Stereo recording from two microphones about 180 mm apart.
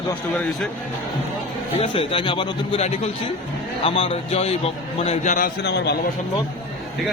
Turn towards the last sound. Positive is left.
turn(degrees=65)  # may be behind; listen again after turning